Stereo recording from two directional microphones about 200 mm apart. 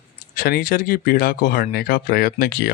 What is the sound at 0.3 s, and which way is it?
Speech, 45° left (ahead or behind).